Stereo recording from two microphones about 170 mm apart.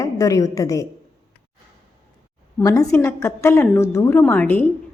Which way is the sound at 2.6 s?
20° left (ahead or behind).